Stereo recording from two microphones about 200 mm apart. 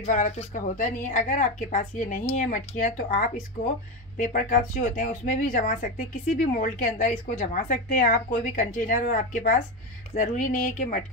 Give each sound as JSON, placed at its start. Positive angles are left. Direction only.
{"t": 0.0, "sound": "a woman's voice", "side_deg": 40}